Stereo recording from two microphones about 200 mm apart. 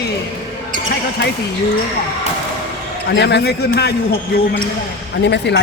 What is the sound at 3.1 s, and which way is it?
Speech, 55° left (ahead or behind).